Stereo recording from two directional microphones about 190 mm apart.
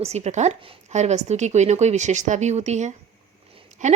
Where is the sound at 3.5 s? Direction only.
40° right (ahead or behind).